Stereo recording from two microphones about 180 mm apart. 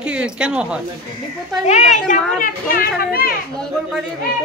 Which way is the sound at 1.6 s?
40° left (ahead or behind).